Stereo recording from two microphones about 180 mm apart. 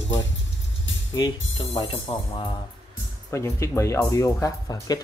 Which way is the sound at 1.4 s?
90° left.